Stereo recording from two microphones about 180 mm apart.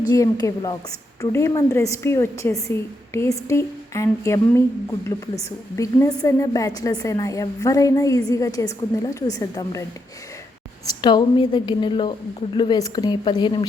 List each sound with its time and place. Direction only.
0.1 s a woman's voice: 20° left (ahead or behind)
10.8 s a woman's voice: 25° left (ahead or behind)